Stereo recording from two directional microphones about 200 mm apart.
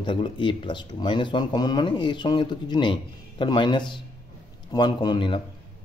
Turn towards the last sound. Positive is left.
turn(degrees=20)  # may be behind; listen again after turning